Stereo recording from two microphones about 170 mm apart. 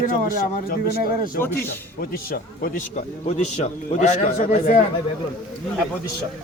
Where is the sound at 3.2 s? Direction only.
40° left (ahead or behind).